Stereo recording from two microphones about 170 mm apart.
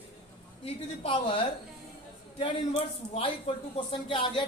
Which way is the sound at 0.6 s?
30° left (ahead or behind).